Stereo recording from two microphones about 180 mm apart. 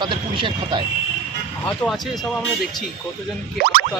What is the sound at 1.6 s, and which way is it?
Speech, 5° left (ahead or behind).